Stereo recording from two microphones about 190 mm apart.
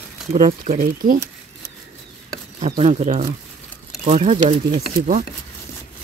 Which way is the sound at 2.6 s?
30° right (ahead or behind).